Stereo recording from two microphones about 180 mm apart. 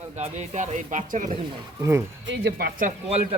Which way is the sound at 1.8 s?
15° right (ahead or behind).